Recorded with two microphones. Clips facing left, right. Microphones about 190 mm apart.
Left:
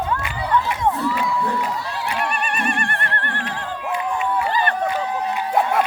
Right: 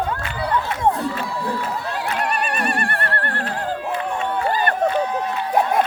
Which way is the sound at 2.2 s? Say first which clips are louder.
Right 2 dB; 40° right (ahead or behind).